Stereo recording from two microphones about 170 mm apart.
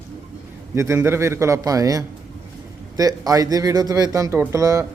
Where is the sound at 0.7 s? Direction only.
15° right (ahead or behind).